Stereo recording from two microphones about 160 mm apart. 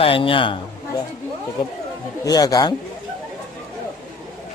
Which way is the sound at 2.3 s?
25° left (ahead or behind).